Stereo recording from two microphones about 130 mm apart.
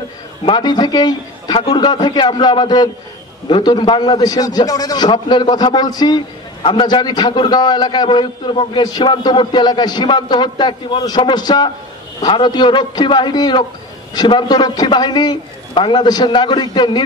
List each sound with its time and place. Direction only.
0.5 s a man's voice: 30° left (ahead or behind)